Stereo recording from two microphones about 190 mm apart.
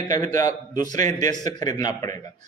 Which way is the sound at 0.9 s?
40° right (ahead or behind).